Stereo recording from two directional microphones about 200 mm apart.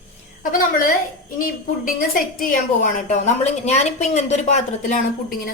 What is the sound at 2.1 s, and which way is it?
A woman's voice, 45° left (ahead or behind).